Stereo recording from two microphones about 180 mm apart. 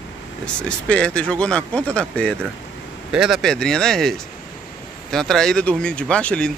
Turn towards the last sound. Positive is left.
turn(degrees=5)  # may be behind; listen again after turning